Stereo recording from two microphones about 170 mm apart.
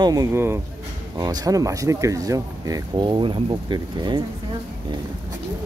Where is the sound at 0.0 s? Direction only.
20° right (ahead or behind).